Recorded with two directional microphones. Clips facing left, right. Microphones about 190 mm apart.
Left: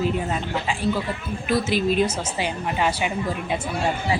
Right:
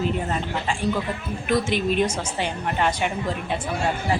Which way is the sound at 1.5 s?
5° left (ahead or behind).